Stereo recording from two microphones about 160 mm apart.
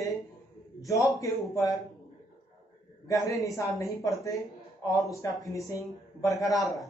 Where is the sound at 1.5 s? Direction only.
20° left (ahead or behind).